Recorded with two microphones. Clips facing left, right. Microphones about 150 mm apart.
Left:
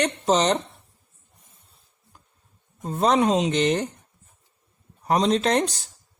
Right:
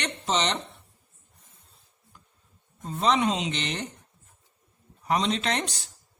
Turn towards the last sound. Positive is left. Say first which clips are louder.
# left 7 dB
turn(degrees=40)  # may be behind; listen again after turning